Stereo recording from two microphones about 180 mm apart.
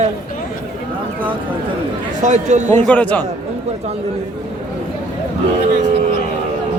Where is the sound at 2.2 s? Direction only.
40° right (ahead or behind).